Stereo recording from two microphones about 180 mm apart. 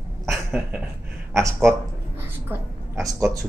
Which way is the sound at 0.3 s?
5° right (ahead or behind).